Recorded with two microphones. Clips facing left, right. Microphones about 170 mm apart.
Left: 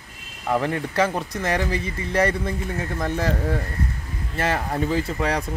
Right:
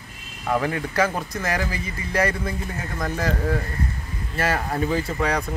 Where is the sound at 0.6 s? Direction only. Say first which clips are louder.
Even; 25° left (ahead or behind).